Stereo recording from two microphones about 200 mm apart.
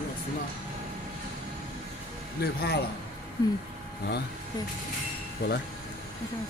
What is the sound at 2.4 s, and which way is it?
Speech, 55° left (ahead or behind).